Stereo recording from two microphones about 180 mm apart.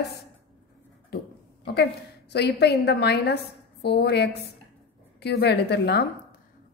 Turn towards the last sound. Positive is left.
turn(degrees=65)  # may be behind; listen again after turning